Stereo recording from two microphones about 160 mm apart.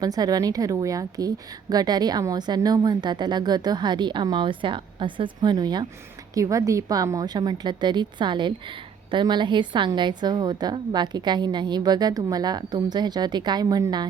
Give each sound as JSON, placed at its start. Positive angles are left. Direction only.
{"t": 0.0, "sound": "a woman's voice", "side_deg": -25}